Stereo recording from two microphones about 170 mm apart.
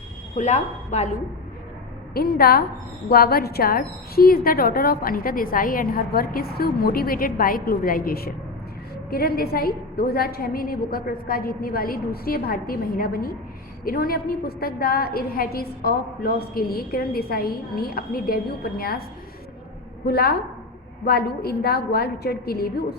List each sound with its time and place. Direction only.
0.3 s a woman's voice: 45° left (ahead or behind)
2.1 s a woman's voice: 65° left (ahead or behind)
20.1 s a woman's voice: 70° left (ahead or behind)